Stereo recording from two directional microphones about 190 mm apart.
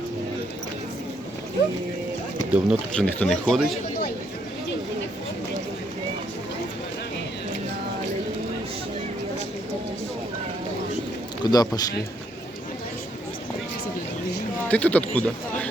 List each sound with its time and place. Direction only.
2.5 s speech: centre (ahead or behind)
11.4 s a man's voice: 20° left (ahead or behind)
14.7 s speech: 5° left (ahead or behind)